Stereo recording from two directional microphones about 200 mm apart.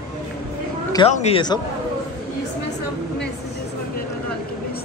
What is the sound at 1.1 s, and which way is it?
Speech, 35° left (ahead or behind).